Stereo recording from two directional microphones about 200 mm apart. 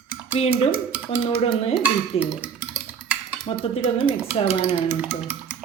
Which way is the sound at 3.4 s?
25° left (ahead or behind).